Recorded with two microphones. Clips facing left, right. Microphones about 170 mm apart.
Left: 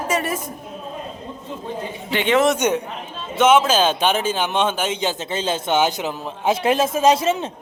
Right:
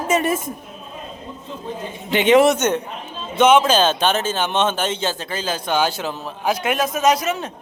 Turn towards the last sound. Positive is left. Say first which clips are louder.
# left 2 dB
turn(degrees=25)  # may be behind; listen again after turning